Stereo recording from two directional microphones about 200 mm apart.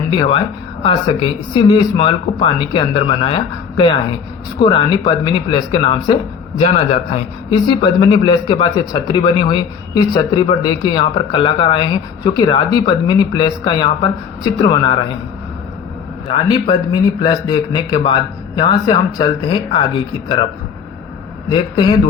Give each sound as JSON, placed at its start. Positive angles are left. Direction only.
{"t": 0.1, "sound": "a man's voice", "side_deg": 25}
{"t": 6.6, "sound": "a man's voice", "side_deg": 30}
{"t": 16.3, "sound": "a man's voice", "side_deg": 25}
{"t": 21.5, "sound": "a man's voice", "side_deg": 20}